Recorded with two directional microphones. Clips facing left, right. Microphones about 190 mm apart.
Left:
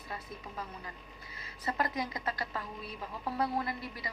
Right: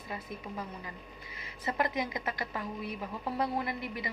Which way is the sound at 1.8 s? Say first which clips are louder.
Right 3 dB; 20° right (ahead or behind).